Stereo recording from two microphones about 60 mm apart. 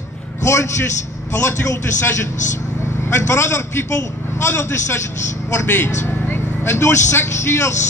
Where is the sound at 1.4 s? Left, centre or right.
Left.